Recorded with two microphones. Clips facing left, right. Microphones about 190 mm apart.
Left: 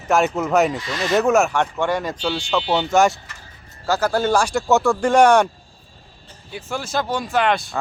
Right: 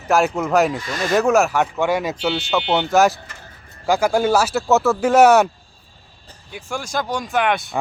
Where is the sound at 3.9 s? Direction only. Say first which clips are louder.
Right 2 dB; 10° right (ahead or behind).